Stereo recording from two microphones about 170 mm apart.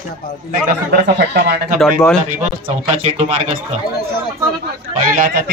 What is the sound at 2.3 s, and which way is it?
Speech, 40° right (ahead or behind).